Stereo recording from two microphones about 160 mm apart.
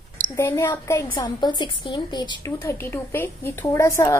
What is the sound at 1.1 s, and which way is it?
Speech, 30° left (ahead or behind).